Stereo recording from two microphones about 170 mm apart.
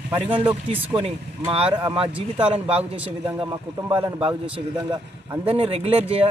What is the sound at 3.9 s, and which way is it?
Speech, 30° right (ahead or behind).